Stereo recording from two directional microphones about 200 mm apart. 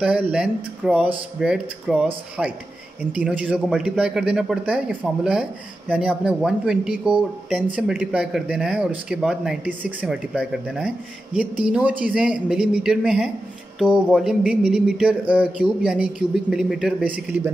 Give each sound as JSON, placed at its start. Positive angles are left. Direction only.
{"t": 0.0, "sound": "speech", "side_deg": -5}